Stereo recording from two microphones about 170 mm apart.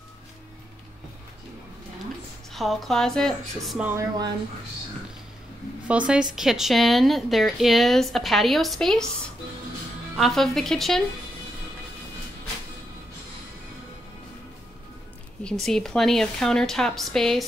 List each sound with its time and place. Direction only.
2.5 s speech: centre (ahead or behind)
3.8 s speech: 15° right (ahead or behind)
5.9 s speech: 5° right (ahead or behind)
10.1 s speech: centre (ahead or behind)
15.6 s speech: 5° left (ahead or behind)